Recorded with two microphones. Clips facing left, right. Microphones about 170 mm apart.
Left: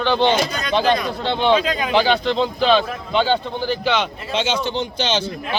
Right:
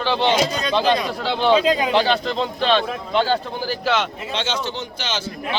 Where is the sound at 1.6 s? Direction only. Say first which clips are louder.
Right 3 dB; 30° right (ahead or behind).